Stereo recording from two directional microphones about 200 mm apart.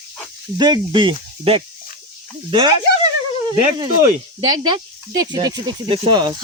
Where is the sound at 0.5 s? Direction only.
20° right (ahead or behind).